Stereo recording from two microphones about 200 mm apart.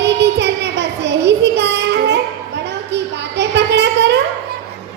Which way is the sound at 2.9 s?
60° right (ahead or behind).